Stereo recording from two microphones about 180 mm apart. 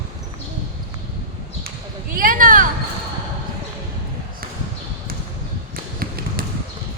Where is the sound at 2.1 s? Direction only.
50° right (ahead or behind).